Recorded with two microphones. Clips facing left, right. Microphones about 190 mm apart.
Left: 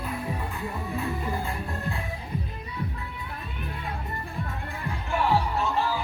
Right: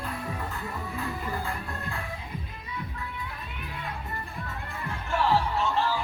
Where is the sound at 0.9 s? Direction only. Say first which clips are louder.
Left 4 dB; 20° left (ahead or behind).